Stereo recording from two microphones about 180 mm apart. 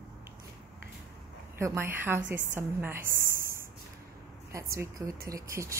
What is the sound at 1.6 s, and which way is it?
A woman's voice, 15° right (ahead or behind).